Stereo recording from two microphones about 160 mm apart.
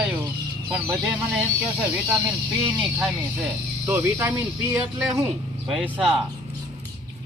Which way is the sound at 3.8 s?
15° right (ahead or behind).